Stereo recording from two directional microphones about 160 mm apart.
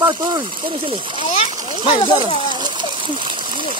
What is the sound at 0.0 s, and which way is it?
Speech, 20° right (ahead or behind).